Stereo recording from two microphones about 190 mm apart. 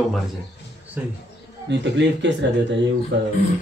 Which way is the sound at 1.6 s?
70° right (ahead or behind).